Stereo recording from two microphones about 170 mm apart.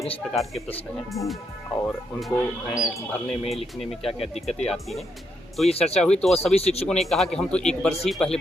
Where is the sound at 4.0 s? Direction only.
35° left (ahead or behind).